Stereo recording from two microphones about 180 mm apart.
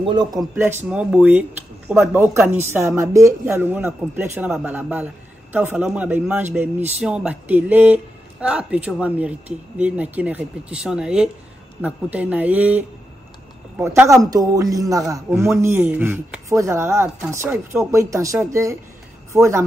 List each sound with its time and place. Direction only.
0.0 s a man's voice: 25° right (ahead or behind)
0.6 s speech: 15° right (ahead or behind)